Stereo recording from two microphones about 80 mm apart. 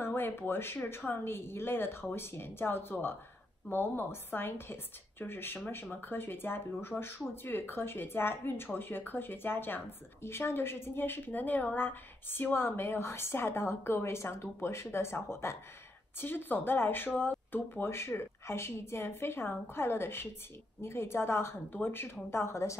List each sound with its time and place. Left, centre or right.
0.0 s a woman's voice: left